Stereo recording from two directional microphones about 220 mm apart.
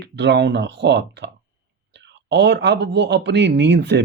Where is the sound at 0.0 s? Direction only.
50° right (ahead or behind).